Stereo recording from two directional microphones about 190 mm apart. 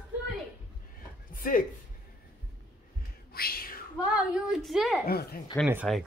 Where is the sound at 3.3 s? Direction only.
50° left (ahead or behind).